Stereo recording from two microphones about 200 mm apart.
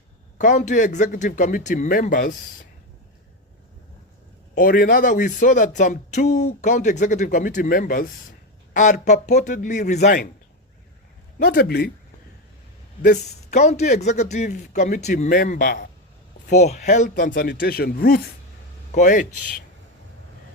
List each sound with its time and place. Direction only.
0.3 s speech: 40° left (ahead or behind)
4.5 s speech: 45° left (ahead or behind)
11.3 s a man's voice: 55° left (ahead or behind)
13.0 s speech: 35° left (ahead or behind)
16.5 s a man's voice: 35° left (ahead or behind)